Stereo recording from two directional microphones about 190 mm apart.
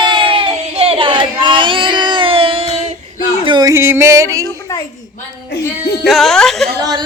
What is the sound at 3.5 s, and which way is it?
Yodeling, 20° right (ahead or behind).